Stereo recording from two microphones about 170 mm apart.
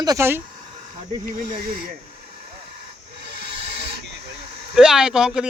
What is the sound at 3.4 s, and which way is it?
Owl, 80° right.